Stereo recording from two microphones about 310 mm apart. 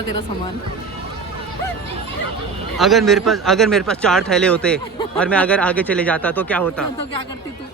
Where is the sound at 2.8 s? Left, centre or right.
Centre.